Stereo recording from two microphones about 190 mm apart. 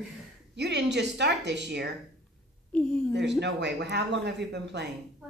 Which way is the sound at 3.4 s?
65° right (ahead or behind).